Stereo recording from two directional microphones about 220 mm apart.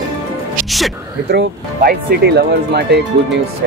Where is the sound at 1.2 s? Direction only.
45° right (ahead or behind).